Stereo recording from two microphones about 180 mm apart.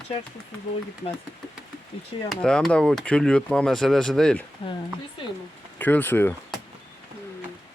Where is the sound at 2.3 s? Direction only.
Centre (ahead or behind).